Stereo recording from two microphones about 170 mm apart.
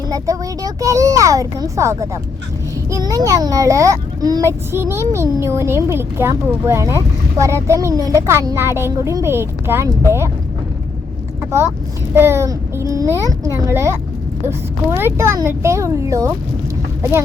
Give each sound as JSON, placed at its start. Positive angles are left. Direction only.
{"t": 0.1, "sound": "a child's voice", "side_deg": -20}
{"t": 12.1, "sound": "a child's voice", "side_deg": -15}